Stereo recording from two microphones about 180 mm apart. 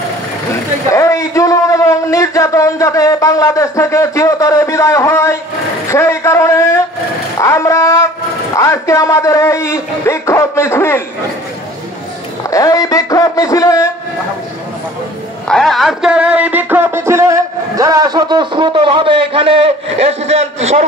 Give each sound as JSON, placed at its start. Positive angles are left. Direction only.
{"t": 0.8, "sound": "a man's voice", "side_deg": 15}
{"t": 12.4, "sound": "speech", "side_deg": 20}
{"t": 15.4, "sound": "a sound", "side_deg": 0}